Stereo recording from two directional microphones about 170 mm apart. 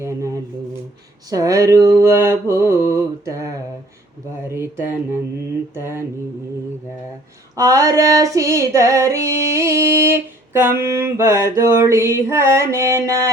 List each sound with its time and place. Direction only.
0.0 s a sound: 15° right (ahead or behind)
1.3 s female singing: 20° right (ahead or behind)
7.5 s female singing: 20° right (ahead or behind)